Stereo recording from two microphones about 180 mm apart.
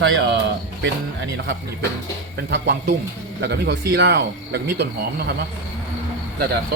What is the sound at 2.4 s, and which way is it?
Speech, 65° right (ahead or behind).